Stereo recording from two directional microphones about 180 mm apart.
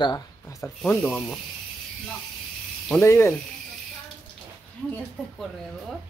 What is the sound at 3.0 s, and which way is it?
Speech, 15° left (ahead or behind).